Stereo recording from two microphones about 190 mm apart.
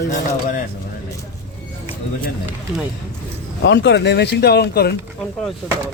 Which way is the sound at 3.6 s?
70° left (ahead or behind).